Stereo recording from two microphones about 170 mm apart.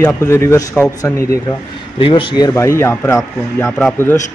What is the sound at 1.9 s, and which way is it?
Speech, 30° left (ahead or behind).